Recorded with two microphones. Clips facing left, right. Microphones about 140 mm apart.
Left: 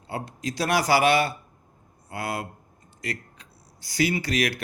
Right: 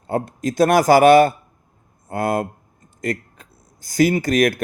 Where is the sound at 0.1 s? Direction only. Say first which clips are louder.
Right 9 dB; 50° right (ahead or behind).